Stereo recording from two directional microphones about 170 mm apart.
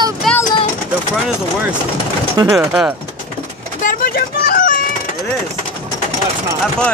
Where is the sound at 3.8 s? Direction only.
60° left (ahead or behind).